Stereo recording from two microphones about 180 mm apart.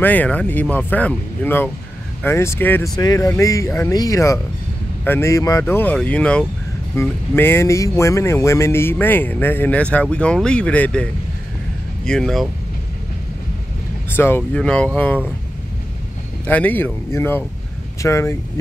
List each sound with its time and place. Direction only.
0.0 s speech: 10° left (ahead or behind)
14.1 s speech: 10° left (ahead or behind)
16.4 s speech: 10° left (ahead or behind)